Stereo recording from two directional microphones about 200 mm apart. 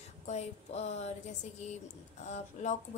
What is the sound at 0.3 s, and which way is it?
Speech, 35° left (ahead or behind).